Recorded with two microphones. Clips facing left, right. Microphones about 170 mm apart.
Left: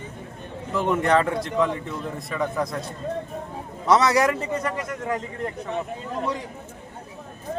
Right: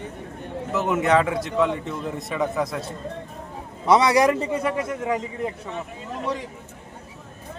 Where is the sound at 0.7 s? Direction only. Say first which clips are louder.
Even; 5° right (ahead or behind).